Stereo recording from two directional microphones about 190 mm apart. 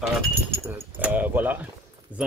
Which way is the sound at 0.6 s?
10° right (ahead or behind).